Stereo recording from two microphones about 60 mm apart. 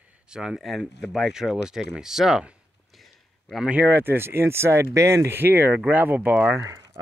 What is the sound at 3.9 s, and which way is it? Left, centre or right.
Speech, right.